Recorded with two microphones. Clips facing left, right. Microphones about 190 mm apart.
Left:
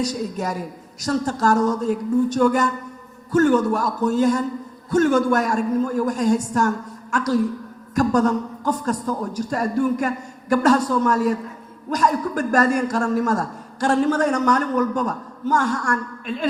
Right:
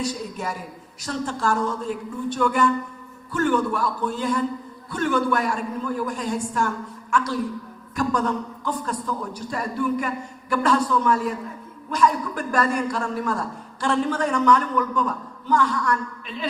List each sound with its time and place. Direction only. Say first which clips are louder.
0.0 s a man's voice: left 4 dB; 40° left (ahead or behind)